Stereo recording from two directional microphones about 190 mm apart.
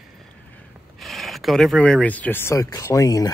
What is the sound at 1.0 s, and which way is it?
Speech, centre (ahead or behind).